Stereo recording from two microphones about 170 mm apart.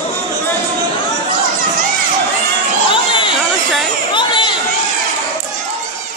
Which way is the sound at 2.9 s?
30° left (ahead or behind).